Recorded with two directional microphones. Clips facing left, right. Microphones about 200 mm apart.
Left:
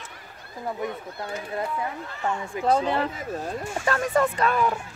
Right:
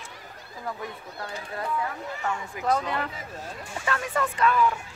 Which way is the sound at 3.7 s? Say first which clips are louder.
Left 5 dB; 40° left (ahead or behind).